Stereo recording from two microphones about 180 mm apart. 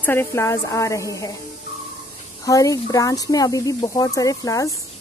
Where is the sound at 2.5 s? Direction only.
20° left (ahead or behind).